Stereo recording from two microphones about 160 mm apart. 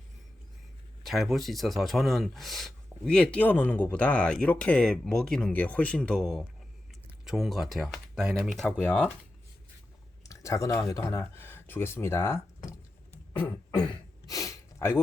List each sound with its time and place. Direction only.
1.0 s speech: centre (ahead or behind)
10.2 s speech: 20° left (ahead or behind)
13.3 s throat clearing: 30° left (ahead or behind)